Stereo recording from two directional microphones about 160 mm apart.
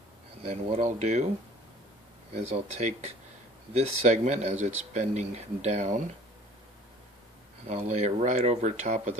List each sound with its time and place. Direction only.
0.5 s speech: 40° right (ahead or behind)
2.3 s speech: 45° right (ahead or behind)
7.6 s speech: 45° right (ahead or behind)